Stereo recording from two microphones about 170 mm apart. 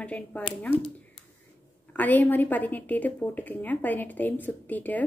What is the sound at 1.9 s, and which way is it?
A woman's voice, 10° left (ahead or behind).